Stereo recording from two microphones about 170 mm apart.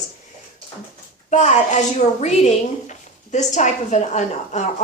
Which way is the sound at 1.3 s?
45° left (ahead or behind).